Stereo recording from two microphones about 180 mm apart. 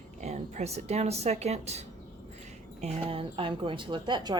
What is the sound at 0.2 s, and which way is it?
Speech, 40° right (ahead or behind).